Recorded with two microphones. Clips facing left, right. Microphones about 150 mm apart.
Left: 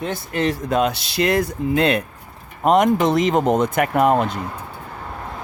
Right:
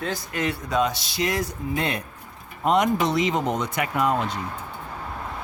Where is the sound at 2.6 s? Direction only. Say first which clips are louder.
Left 5 dB; 50° left (ahead or behind).